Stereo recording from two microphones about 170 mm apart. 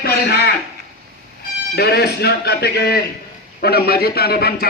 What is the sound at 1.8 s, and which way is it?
A man's voice, 70° left (ahead or behind).